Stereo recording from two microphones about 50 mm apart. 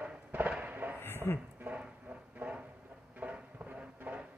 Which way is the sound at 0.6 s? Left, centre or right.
Right.